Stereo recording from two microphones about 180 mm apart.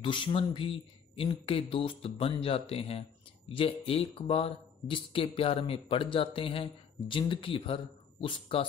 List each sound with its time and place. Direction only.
0.0 s speech: 30° left (ahead or behind)